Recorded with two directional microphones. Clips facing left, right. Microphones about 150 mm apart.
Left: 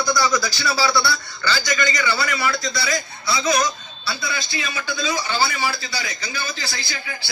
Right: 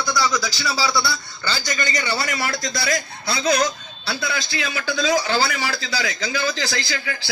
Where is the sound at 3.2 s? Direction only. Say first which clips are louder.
Even; 60° right (ahead or behind).